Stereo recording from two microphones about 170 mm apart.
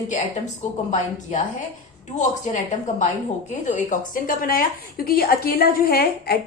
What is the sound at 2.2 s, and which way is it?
A woman's voice, 45° left (ahead or behind).